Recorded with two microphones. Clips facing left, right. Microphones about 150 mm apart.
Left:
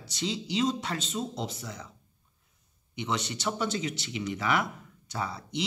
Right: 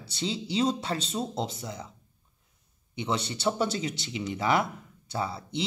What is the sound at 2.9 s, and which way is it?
Speech, 30° right (ahead or behind).